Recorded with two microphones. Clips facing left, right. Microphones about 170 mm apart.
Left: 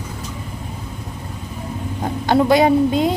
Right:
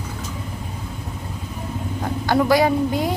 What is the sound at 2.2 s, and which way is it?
Speech, 20° left (ahead or behind).